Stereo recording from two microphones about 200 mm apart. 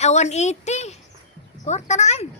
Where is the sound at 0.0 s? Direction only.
35° left (ahead or behind).